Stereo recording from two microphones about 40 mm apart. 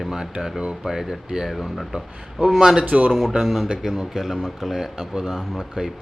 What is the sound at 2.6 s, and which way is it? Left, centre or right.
Speech, centre.